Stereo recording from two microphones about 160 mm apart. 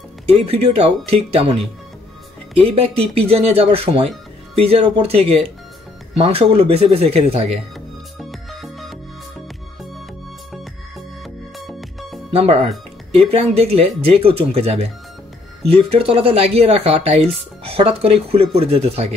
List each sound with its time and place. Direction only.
0.3 s speech: 40° right (ahead or behind)
2.7 s speech: 40° right (ahead or behind)
8.2 s music: centre (ahead or behind)
11.5 s music: centre (ahead or behind)
12.3 s speech: 35° right (ahead or behind)
15.9 s speech: 35° right (ahead or behind)